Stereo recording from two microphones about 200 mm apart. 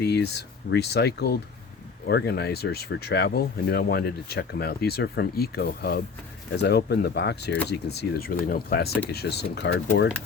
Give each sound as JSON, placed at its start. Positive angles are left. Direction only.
{"t": 0.0, "sound": "speech", "side_deg": 55}